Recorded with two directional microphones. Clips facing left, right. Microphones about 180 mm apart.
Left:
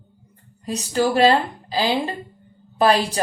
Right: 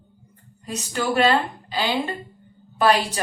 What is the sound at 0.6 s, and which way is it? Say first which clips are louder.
Speech: left 5 dB; 30° left (ahead or behind).